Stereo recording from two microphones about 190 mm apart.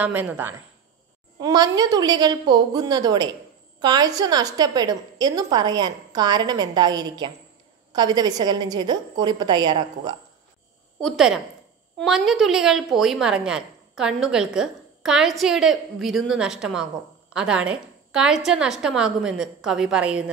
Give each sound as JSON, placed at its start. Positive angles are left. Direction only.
{"t": 0.0, "sound": "a woman's voice", "side_deg": -10}
{"t": 1.4, "sound": "a woman's voice", "side_deg": -20}
{"t": 11.0, "sound": "a woman's voice", "side_deg": 0}